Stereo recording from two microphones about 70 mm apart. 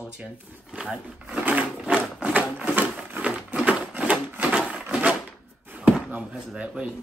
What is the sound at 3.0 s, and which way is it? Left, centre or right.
Wood, right.